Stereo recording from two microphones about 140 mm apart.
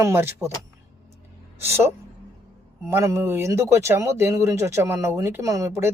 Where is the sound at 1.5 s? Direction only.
15° right (ahead or behind).